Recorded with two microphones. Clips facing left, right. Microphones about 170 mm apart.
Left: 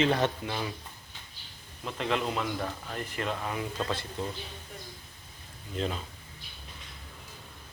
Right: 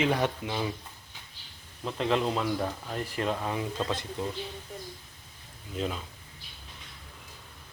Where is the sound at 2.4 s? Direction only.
15° right (ahead or behind).